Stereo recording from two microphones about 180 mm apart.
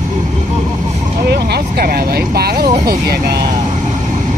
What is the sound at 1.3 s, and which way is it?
Speech, 65° right (ahead or behind).